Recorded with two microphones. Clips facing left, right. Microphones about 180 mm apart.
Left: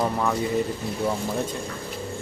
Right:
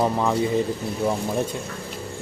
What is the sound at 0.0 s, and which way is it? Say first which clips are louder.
Speech: right 3 dB; 20° right (ahead or behind).